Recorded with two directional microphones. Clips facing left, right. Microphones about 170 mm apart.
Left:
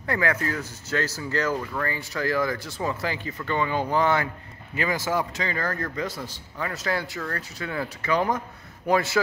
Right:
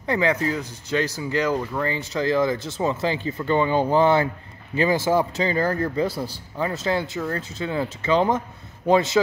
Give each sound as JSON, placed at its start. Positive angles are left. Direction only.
{"t": 0.0, "sound": "speech", "side_deg": -20}